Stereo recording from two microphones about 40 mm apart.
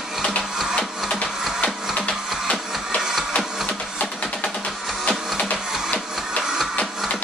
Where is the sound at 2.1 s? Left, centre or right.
Left.